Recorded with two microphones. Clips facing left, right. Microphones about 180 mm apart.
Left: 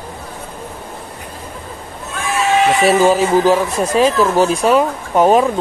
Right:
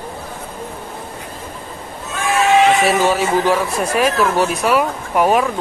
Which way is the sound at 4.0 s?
30° left (ahead or behind).